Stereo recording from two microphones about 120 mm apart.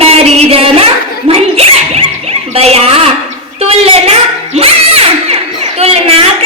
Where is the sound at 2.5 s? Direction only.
55° right (ahead or behind).